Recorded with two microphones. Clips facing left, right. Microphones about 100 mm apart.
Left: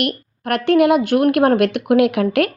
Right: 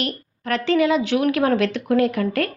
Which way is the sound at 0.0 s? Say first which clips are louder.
Left 5 dB; 65° left (ahead or behind).